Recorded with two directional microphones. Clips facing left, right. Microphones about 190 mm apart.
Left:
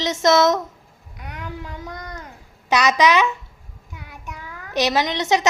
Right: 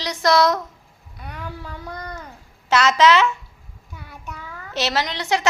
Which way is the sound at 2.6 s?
15° left (ahead or behind).